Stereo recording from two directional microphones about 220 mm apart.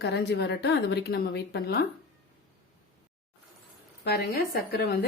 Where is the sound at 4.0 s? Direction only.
45° left (ahead or behind).